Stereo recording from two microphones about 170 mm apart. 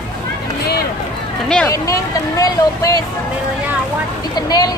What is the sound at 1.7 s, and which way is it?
Speech, 20° left (ahead or behind).